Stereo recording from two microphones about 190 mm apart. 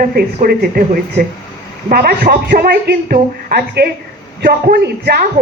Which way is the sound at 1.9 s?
50° right (ahead or behind).